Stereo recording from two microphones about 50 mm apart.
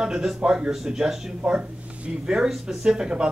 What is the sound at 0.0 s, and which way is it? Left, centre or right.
A man's voice, centre.